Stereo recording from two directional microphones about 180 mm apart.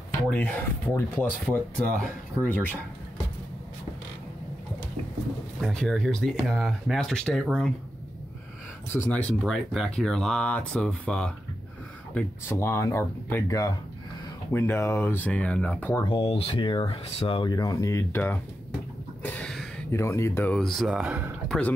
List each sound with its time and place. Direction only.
0.3 s speech: 10° left (ahead or behind)
5.6 s speech: 5° left (ahead or behind)
8.9 s speech: 10° left (ahead or behind)
16.1 s speech: 30° left (ahead or behind); by 18.4 s 10° left (ahead or behind)
19.2 s a sound: 5° left (ahead or behind)
19.9 s speech: 15° left (ahead or behind); by 21.4 s 10° right (ahead or behind)
21.5 s speech: 10° left (ahead or behind)